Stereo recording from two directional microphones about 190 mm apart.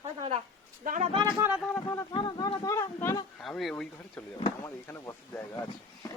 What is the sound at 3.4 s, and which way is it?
Speech, centre (ahead or behind).